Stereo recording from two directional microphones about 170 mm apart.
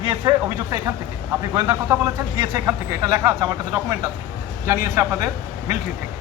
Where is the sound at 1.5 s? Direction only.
20° right (ahead or behind).